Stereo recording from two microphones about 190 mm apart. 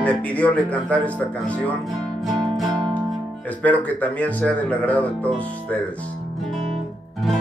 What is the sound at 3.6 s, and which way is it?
Speech, 10° left (ahead or behind).